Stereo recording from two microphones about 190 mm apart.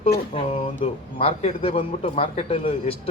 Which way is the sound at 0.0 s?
30° left (ahead or behind).